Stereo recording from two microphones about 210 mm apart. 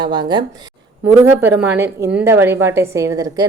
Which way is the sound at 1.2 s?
10° right (ahead or behind).